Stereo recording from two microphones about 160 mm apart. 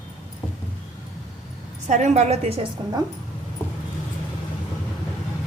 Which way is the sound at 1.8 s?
50° right (ahead or behind).